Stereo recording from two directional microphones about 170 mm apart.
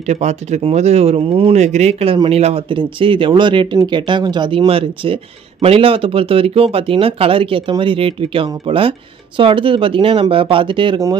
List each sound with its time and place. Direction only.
0.0 s speech: 40° right (ahead or behind); by 11.1 s 25° right (ahead or behind)